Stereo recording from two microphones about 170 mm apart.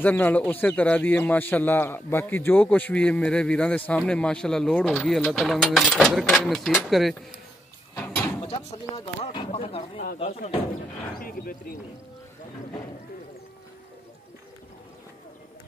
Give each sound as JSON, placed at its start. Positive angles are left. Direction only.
{"t": 0.0, "sound": "speech", "side_deg": 10}
{"t": 7.9, "sound": "a sound", "side_deg": 10}
{"t": 8.5, "sound": "speech", "side_deg": 30}
{"t": 11.1, "sound": "speech", "side_deg": 55}